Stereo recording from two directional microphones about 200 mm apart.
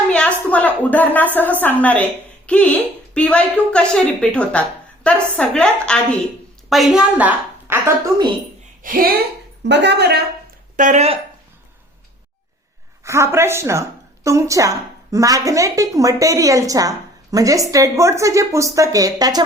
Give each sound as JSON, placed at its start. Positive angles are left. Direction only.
{"t": 0.1, "sound": "a woman's voice", "side_deg": 5}
{"t": 8.8, "sound": "speech", "side_deg": -45}
{"t": 9.6, "sound": "a woman's voice", "side_deg": -60}
{"t": 10.8, "sound": "speech", "side_deg": -35}
{"t": 13.1, "sound": "a woman's voice", "side_deg": -15}